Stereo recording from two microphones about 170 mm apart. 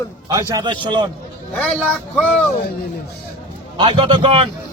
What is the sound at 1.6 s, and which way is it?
Speech, 5° left (ahead or behind).